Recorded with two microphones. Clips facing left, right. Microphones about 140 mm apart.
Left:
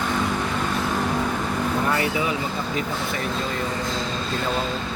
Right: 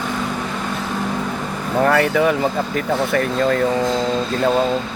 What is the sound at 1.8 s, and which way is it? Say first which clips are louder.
Speech: right 12 dB; 70° right (ahead or behind).